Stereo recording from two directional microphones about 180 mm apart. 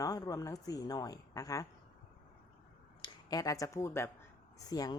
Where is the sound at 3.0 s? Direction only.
20° left (ahead or behind).